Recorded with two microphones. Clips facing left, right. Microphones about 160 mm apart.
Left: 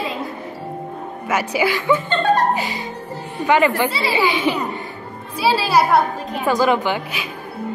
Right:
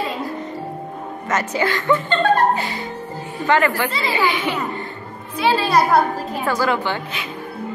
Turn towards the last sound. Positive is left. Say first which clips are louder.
# left 2 dB
turn(degrees=15)  # may be behind; listen again after turning